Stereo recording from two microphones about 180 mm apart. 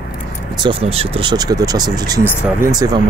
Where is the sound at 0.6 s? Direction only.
30° right (ahead or behind).